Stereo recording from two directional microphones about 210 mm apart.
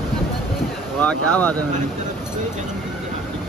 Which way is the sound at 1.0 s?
5° left (ahead or behind).